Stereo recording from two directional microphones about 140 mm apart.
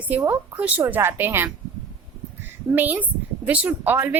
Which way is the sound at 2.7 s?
10° right (ahead or behind).